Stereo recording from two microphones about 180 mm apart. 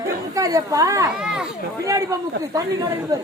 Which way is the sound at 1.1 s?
5° right (ahead or behind).